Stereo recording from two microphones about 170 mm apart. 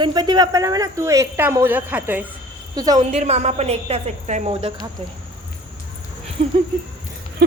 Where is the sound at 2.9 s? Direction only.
40° right (ahead or behind).